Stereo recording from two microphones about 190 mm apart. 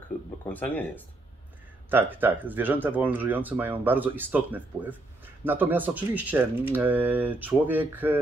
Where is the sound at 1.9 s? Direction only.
10° right (ahead or behind).